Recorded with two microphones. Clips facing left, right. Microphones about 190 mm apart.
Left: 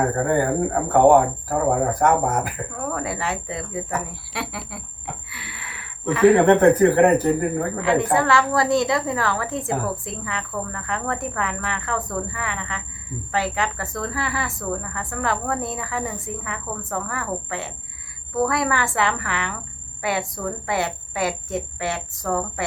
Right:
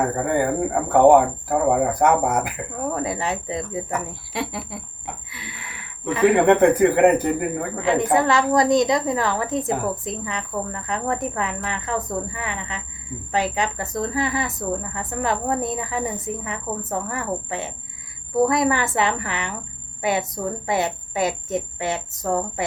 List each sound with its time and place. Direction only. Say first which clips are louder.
1.0 s speech: right 1 dB; 15° right (ahead or behind)
6.1 s speech: left 1 dB; 15° right (ahead or behind)